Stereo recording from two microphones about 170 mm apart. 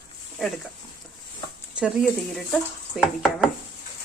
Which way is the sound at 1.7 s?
5° right (ahead or behind).